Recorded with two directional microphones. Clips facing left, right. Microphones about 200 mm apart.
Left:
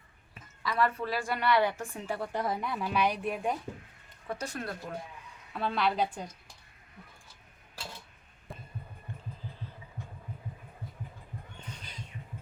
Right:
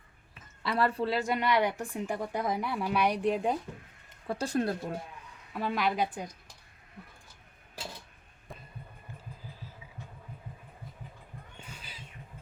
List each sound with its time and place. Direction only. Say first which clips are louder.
0.6 s speech: right 1 dB; 30° right (ahead or behind)
4.3 s speech: right 7 dB; 30° right (ahead or behind)
5.5 s speech: even; 10° right (ahead or behind)
8.5 s music: left 1 dB; centre (ahead or behind)
11.6 s cat: left 2 dB; 5° right (ahead or behind)